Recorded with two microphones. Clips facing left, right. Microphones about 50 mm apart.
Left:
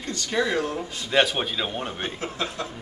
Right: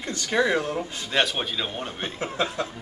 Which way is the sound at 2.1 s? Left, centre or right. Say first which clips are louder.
Right 3 dB; right.